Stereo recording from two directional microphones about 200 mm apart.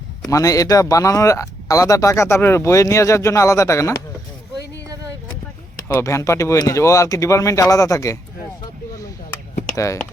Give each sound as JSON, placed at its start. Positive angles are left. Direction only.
{"t": 0.3, "sound": "speech", "side_deg": 15}
{"t": 5.9, "sound": "speech", "side_deg": 15}
{"t": 9.7, "sound": "speech", "side_deg": 15}